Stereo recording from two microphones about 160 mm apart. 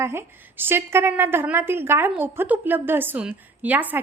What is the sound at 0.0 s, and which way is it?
A woman's voice, 15° right (ahead or behind).